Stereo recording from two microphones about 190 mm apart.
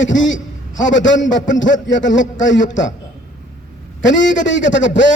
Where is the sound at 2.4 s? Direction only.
70° left (ahead or behind).